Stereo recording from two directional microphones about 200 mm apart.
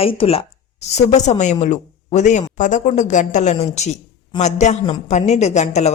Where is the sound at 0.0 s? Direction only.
25° left (ahead or behind).